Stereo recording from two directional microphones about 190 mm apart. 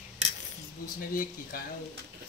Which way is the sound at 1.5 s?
50° left (ahead or behind).